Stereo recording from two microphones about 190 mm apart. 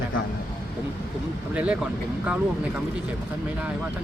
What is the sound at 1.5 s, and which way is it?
Speech, 5° right (ahead or behind).